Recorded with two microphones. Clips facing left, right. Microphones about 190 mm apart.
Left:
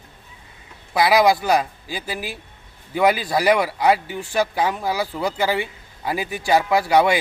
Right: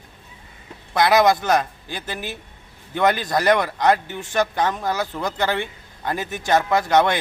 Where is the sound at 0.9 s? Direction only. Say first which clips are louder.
Even; 5° left (ahead or behind).